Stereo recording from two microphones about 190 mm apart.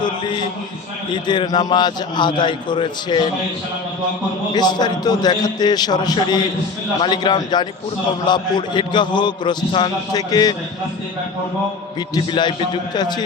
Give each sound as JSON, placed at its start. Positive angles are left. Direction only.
{"t": 0.0, "sound": "a man's voice", "side_deg": 25}
{"t": 4.5, "sound": "a man's voice", "side_deg": 20}
{"t": 11.9, "sound": "a man's voice", "side_deg": 20}